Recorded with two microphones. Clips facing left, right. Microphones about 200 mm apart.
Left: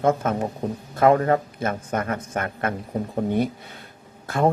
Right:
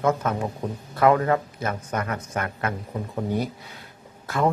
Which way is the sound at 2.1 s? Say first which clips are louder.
Left 2 dB; 35° left (ahead or behind).